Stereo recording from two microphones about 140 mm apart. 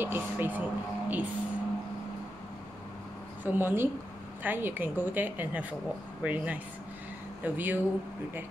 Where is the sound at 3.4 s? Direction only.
15° right (ahead or behind).